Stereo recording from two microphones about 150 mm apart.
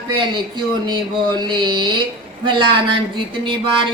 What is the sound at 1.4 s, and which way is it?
Music, 30° right (ahead or behind).